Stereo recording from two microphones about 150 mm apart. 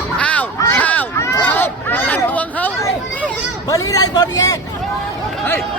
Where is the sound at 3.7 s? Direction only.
25° left (ahead or behind).